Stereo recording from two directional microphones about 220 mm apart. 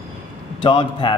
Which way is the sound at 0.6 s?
20° left (ahead or behind).